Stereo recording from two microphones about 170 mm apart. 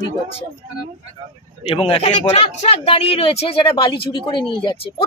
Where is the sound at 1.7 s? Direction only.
35° left (ahead or behind).